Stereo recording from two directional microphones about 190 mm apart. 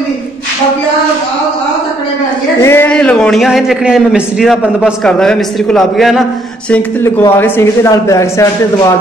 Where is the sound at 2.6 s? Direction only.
10° left (ahead or behind).